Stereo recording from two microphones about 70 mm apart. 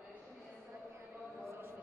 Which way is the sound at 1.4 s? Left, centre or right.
Right.